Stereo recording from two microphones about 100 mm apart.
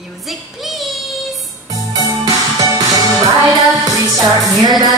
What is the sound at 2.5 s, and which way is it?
Music, 40° right (ahead or behind).